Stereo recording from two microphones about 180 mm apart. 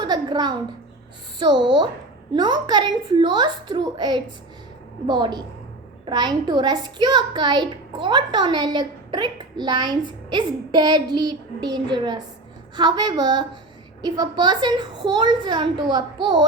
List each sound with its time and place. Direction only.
0.0 s a child's voice: 25° right (ahead or behind)